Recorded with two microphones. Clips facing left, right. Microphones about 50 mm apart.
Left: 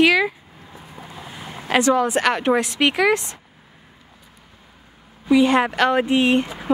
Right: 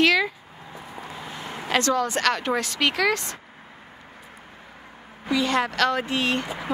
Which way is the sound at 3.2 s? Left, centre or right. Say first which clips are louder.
Right 3 dB; right.